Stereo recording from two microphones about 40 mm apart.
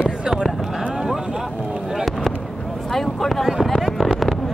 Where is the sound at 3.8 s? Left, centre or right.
Centre.